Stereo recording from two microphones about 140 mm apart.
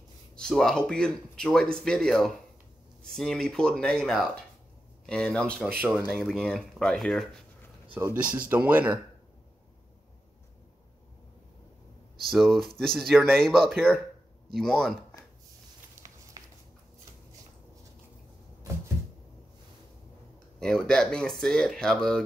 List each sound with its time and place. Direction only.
0.4 s speech: 5° left (ahead or behind)
5.9 s speech: 5° right (ahead or behind)
7.9 s speech: 15° right (ahead or behind)
12.3 s speech: centre (ahead or behind)
16.4 s a sound: 25° right (ahead or behind)
20.5 s speech: 5° left (ahead or behind)